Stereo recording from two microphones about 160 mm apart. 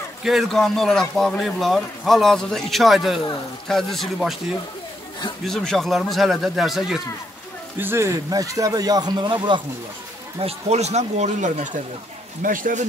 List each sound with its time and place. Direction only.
0.2 s speech: centre (ahead or behind)
7.7 s speech: 15° right (ahead or behind)
10.4 s speech: 45° right (ahead or behind); by 12.8 s 60° right (ahead or behind)